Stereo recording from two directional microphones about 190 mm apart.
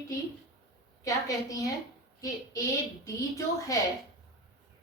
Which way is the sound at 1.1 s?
15° left (ahead or behind).